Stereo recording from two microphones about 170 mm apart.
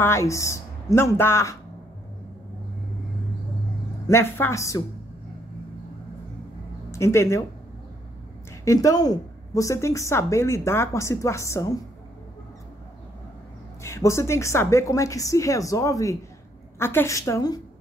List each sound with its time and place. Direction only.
0.0 s a woman's voice: 15° left (ahead or behind)
4.1 s a woman's voice: 15° left (ahead or behind)
6.9 s speech: 15° left (ahead or behind)
8.6 s a woman's voice: 20° left (ahead or behind)
13.8 s a woman's voice: 15° left (ahead or behind)